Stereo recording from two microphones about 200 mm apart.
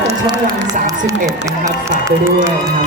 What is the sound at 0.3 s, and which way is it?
Speech, 15° right (ahead or behind).